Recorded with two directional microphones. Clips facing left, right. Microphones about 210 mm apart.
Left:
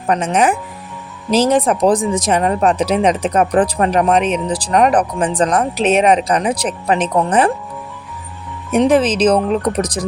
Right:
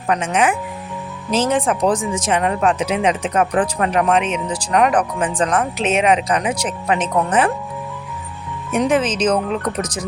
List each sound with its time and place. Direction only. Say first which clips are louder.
0.1 s speech: left 3 dB; 40° left (ahead or behind)
8.7 s speech: left 5 dB; 35° left (ahead or behind)